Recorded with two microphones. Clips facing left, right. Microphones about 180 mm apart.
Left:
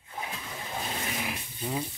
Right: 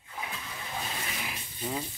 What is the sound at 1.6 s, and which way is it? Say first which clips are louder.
Stir: left 1 dB; centre (ahead or behind).